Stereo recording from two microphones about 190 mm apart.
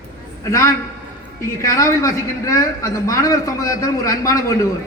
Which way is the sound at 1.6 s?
15° left (ahead or behind).